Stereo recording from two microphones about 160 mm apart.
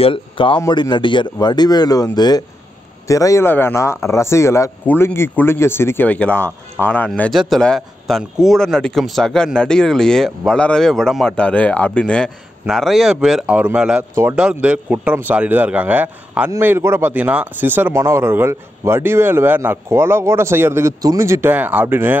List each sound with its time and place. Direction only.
0.0 s a man's voice: 35° left (ahead or behind); by 22.1 s 15° right (ahead or behind)